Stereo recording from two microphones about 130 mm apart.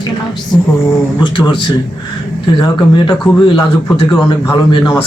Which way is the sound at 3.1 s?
35° left (ahead or behind).